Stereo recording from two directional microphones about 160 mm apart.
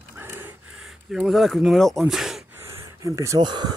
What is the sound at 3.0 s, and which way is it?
Speech, 20° right (ahead or behind).